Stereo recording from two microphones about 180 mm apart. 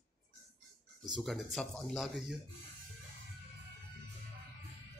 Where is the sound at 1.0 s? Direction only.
Centre (ahead or behind).